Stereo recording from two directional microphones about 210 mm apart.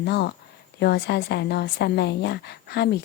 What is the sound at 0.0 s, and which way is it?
A woman's voice, 55° left (ahead or behind).